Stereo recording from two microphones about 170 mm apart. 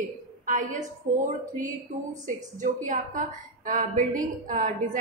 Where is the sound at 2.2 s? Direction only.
50° right (ahead or behind).